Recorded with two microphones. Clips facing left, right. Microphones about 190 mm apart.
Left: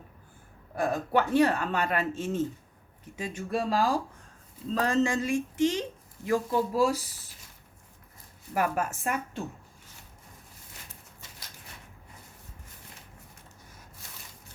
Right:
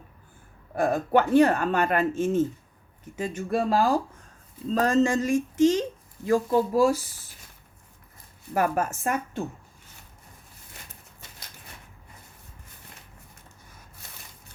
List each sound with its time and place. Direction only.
0.8 s speech: 50° right (ahead or behind)
8.5 s speech: 40° right (ahead or behind)